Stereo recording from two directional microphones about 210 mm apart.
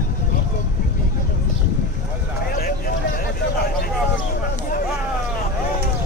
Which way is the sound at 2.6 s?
40° left (ahead or behind).